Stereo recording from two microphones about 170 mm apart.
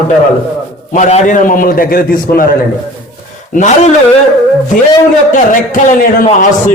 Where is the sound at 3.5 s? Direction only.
45° left (ahead or behind).